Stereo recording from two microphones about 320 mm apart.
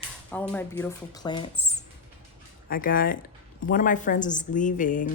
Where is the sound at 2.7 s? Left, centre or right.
Left.